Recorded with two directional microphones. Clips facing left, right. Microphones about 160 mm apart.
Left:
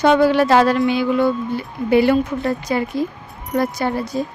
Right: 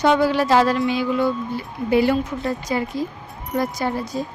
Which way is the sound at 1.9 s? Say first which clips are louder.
Left 3 dB; 65° left (ahead or behind).